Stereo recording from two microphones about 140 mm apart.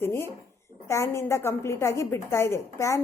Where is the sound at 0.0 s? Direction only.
15° left (ahead or behind).